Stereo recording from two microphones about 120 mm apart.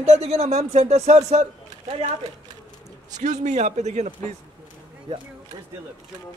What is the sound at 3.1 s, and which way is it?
A man's voice, 85° right.